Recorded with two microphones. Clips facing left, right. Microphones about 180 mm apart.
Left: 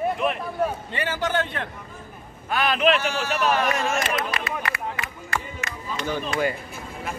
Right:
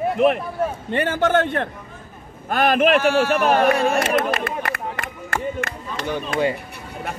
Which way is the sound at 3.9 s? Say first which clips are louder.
Right 6 dB; 50° right (ahead or behind).